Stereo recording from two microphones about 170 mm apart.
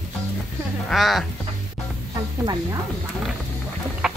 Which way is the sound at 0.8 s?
Centre (ahead or behind).